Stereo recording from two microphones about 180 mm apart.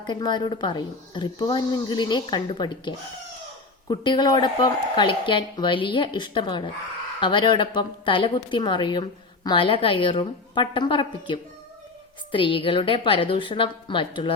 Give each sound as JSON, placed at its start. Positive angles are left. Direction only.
{"t": 0.0, "sound": "a woman's voice", "side_deg": 25}